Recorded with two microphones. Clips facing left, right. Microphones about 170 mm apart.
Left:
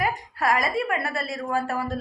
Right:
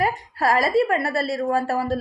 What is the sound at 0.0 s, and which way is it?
A woman's voice, 30° right (ahead or behind).